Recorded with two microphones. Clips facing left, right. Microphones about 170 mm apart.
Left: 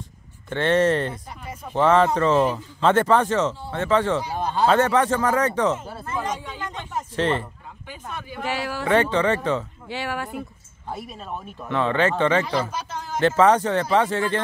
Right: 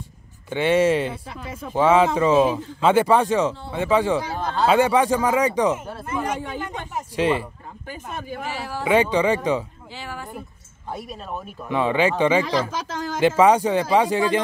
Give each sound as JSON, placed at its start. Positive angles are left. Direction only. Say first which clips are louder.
{"t": 0.5, "sound": "speech", "louder": "right 1 dB", "side_deg": -10}
{"t": 4.3, "sound": "speech", "louder": "even", "side_deg": 15}
{"t": 4.6, "sound": "speech", "louder": "right 2 dB", "side_deg": -10}
{"t": 6.3, "sound": "speech", "louder": "right 4 dB", "side_deg": -60}
{"t": 6.9, "sound": "speech", "louder": "right 2 dB", "side_deg": -10}
{"t": 7.9, "sound": "speech", "louder": "right 3 dB", "side_deg": -45}
{"t": 8.5, "sound": "speech", "louder": "left 6 dB", "side_deg": 75}
{"t": 8.8, "sound": "speech", "louder": "right 2 dB", "side_deg": -10}
{"t": 9.8, "sound": "speech", "louder": "left 6 dB", "side_deg": 75}
{"t": 10.9, "sound": "speech", "louder": "right 1 dB", "side_deg": 0}
{"t": 11.7, "sound": "speech", "louder": "right 1 dB", "side_deg": -10}
{"t": 12.4, "sound": "speech", "louder": "right 2 dB", "side_deg": -90}
{"t": 13.4, "sound": "speech", "louder": "right 1 dB", "side_deg": -10}